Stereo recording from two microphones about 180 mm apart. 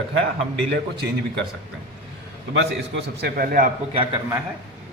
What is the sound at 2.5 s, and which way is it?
A man's voice, 85° right.